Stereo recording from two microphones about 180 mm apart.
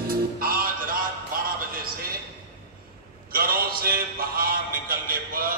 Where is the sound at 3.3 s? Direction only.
55° right (ahead or behind).